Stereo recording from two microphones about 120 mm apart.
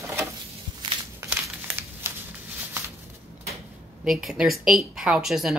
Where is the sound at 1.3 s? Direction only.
20° right (ahead or behind).